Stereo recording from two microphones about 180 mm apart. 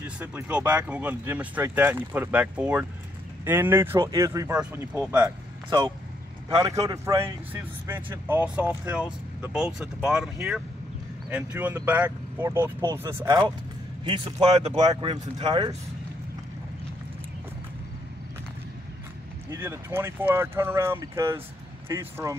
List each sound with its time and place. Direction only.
0.0 s speech: 10° right (ahead or behind)
6.6 s speech: 20° right (ahead or behind)
14.0 s speech: 30° right (ahead or behind)
19.5 s speech: 15° right (ahead or behind)